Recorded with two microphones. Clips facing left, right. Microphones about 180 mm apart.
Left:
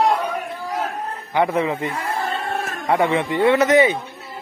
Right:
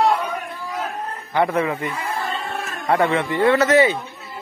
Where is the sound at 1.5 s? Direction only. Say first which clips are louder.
Left 1 dB; 20° left (ahead or behind).